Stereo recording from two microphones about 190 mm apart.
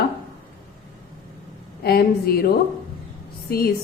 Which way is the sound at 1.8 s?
55° left (ahead or behind).